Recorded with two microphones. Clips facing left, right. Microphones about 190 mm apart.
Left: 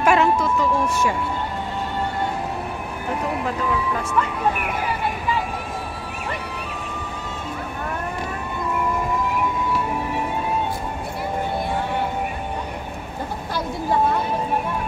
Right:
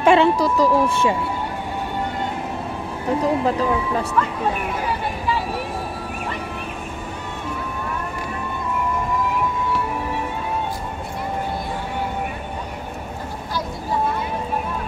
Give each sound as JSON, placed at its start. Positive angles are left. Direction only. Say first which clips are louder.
{"t": 0.0, "sound": "speech", "louder": "right 3 dB", "side_deg": -30}
{"t": 3.2, "sound": "speech", "louder": "right 6 dB", "side_deg": -30}